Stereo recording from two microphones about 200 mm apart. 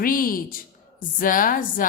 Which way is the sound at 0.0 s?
45° left (ahead or behind).